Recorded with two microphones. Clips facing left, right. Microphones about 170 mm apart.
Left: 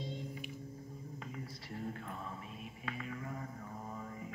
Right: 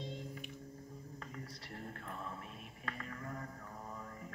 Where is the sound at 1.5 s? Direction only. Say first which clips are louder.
Left 5 dB; 5° left (ahead or behind).